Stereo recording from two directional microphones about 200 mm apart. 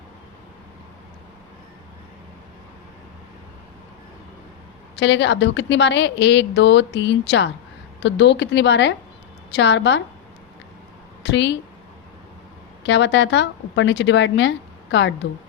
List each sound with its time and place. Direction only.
4.9 s a woman's voice: 65° left (ahead or behind)
11.2 s a woman's voice: 60° left (ahead or behind)
12.8 s a woman's voice: 65° left (ahead or behind)